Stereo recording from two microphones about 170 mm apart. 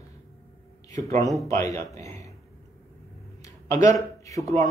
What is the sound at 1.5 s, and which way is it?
Speech, 20° left (ahead or behind).